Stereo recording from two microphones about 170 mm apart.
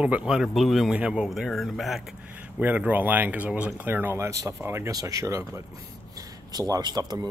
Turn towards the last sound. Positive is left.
turn(degrees=-20)  # may be behind; listen again after turning